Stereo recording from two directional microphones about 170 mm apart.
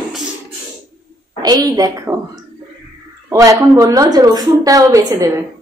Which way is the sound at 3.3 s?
15° right (ahead or behind).